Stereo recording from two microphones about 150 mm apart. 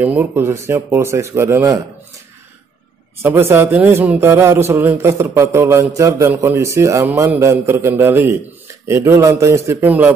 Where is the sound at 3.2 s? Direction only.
15° right (ahead or behind).